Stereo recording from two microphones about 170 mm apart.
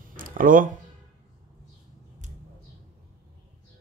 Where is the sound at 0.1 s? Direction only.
55° right (ahead or behind).